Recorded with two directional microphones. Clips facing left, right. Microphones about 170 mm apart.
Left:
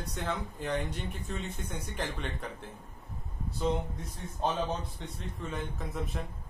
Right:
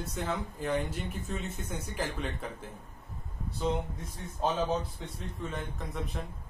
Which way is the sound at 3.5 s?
Centre (ahead or behind).